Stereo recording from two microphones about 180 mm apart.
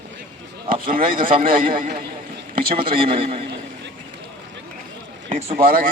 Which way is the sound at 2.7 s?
30° right (ahead or behind).